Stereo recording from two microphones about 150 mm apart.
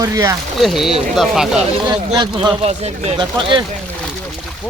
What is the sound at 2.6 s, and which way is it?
Speech, 45° right (ahead or behind).